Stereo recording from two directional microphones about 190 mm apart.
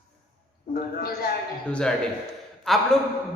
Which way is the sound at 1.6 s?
5° left (ahead or behind).